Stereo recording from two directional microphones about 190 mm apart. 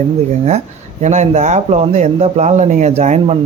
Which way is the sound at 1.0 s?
40° right (ahead or behind).